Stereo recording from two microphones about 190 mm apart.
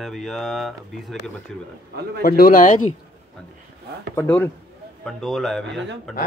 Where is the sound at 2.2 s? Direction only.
50° left (ahead or behind).